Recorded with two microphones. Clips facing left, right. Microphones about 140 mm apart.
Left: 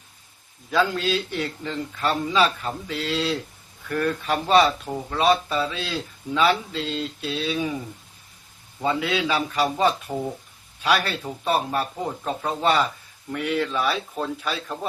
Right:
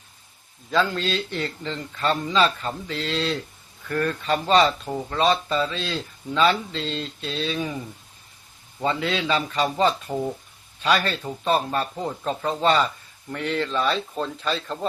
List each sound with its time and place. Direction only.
0.7 s a man's voice: 10° left (ahead or behind)
8.8 s a man's voice: 10° left (ahead or behind)